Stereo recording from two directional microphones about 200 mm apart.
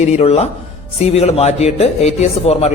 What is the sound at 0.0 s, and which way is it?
A woman's voice, 30° left (ahead or behind).